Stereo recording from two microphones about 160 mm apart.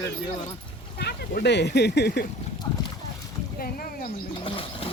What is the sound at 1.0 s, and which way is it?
Speech, 90° left.